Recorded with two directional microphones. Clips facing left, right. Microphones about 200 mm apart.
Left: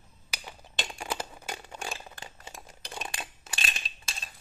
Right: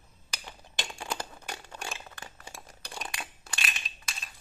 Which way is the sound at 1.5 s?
20° left (ahead or behind).